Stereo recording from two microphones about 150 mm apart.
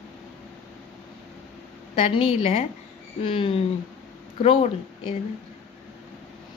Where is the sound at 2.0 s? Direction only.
40° left (ahead or behind).